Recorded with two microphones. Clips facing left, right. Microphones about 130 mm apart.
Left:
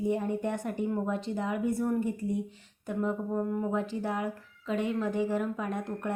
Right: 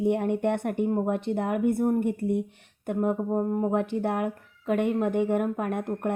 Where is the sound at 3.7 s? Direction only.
60° right (ahead or behind).